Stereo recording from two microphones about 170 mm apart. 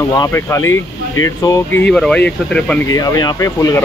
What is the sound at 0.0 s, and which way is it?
Speech, 15° left (ahead or behind).